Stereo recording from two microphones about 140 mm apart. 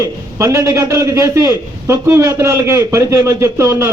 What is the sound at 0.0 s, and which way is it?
A man's voice, 20° right (ahead or behind).